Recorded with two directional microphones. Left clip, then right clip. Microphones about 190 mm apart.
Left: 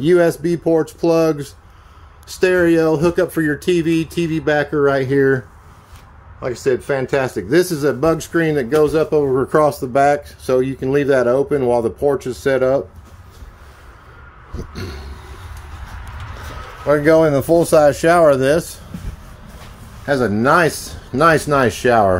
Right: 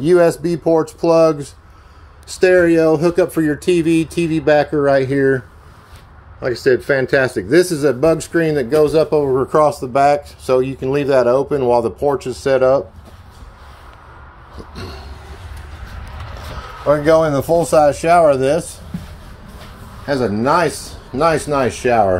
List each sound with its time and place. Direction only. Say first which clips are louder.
0.0 s speech: right 1 dB; 15° left (ahead or behind)
6.4 s speech: right 3 dB; centre (ahead or behind)
9.3 s speech: right 1 dB; 30° left (ahead or behind)
16.8 s speech: even; 40° left (ahead or behind)
20.1 s speech: left 1 dB; 35° left (ahead or behind)